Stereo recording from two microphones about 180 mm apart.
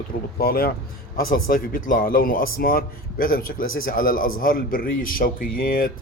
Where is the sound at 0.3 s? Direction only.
55° left (ahead or behind).